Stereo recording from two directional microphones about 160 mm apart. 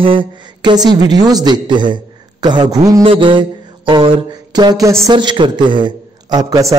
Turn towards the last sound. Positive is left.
turn(degrees=-20)  # may be behind; listen again after turning